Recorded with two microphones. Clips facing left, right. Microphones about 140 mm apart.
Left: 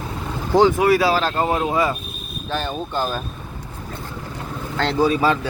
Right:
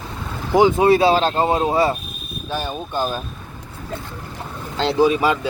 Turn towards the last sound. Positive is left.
turn(degrees=-15)  # may be behind; listen again after turning